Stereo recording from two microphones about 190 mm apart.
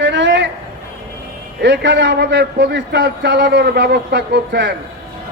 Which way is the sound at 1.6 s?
65° right (ahead or behind).